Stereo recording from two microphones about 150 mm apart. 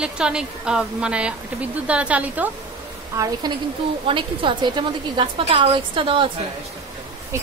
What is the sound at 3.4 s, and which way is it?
A woman's voice, 30° right (ahead or behind).